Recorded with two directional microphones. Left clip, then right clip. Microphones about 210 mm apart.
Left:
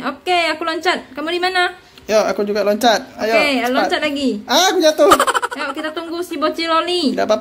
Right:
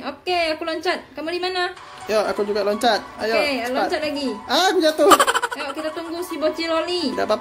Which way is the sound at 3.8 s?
40° left (ahead or behind).